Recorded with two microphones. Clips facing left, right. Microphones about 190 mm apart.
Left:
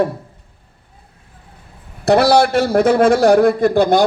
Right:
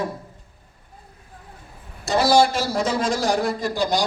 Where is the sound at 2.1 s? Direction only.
65° left (ahead or behind).